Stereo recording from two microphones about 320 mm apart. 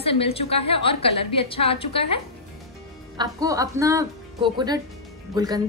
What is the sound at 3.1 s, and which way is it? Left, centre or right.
A woman's voice, centre.